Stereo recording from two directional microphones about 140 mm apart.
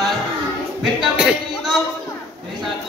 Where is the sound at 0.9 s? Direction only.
5° right (ahead or behind).